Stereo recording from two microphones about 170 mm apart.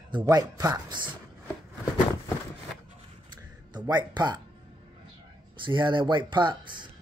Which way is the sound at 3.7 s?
25° right (ahead or behind).